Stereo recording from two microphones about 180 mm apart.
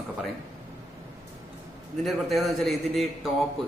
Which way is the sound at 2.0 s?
Centre (ahead or behind).